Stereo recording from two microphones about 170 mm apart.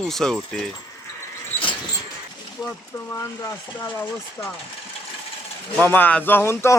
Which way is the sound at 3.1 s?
15° left (ahead or behind).